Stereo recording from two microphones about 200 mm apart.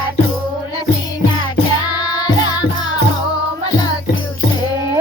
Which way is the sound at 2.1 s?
20° left (ahead or behind).